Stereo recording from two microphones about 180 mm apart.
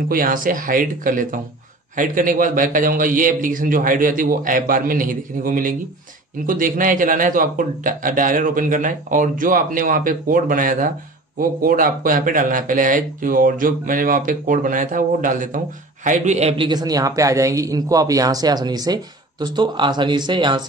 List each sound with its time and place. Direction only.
0.1 s speech: 50° right (ahead or behind); by 20.6 s 25° right (ahead or behind)